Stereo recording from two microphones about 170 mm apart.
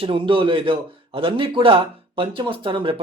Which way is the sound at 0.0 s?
30° right (ahead or behind).